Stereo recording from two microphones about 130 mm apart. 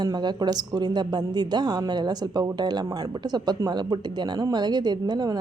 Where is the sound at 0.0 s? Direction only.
35° right (ahead or behind).